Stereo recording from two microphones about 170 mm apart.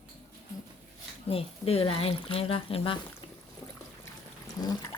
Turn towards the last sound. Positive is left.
turn(degrees=25)  # may be behind; listen again after turning